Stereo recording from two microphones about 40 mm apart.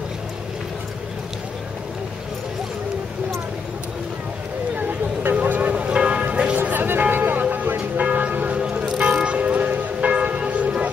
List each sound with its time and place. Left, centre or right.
4.7 s a sound: right
5.3 s vehicle: right
5.9 s a sound: right
6.3 s church bell: right
6.6 s music: right
7.4 s church bell: right
8.8 s music: right
10.2 s church bell: right